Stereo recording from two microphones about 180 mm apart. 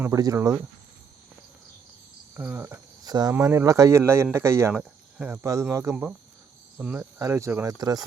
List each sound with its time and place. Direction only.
0.0 s speech: 20° right (ahead or behind)
2.3 s speech: 10° right (ahead or behind)